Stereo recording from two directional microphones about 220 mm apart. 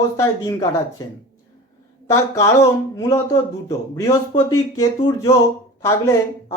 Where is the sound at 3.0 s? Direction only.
15° left (ahead or behind).